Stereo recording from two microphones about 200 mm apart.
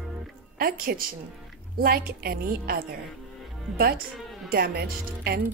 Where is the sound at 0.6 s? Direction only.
45° right (ahead or behind).